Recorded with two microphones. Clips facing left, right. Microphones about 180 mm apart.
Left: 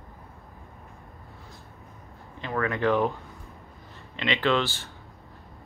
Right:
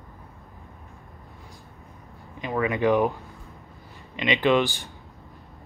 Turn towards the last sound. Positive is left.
turn(degrees=-15)  # may be behind; listen again after turning